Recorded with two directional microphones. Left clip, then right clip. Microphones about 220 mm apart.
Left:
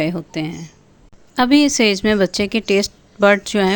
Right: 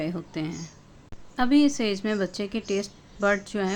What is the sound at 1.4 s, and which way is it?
A woman's voice, 40° left (ahead or behind).